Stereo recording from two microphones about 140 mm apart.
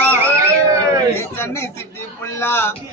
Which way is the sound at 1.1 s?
20° left (ahead or behind).